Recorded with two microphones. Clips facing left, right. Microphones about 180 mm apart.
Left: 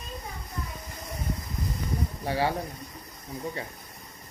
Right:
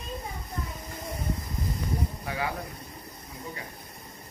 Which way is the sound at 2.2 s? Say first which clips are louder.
Left 8 dB; 30° left (ahead or behind).